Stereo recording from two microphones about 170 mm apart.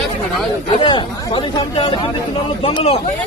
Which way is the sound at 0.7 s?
30° left (ahead or behind).